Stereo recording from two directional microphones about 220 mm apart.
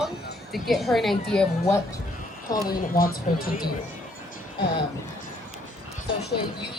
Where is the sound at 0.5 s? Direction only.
Centre (ahead or behind).